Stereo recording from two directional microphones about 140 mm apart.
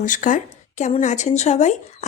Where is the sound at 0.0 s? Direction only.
70° left (ahead or behind).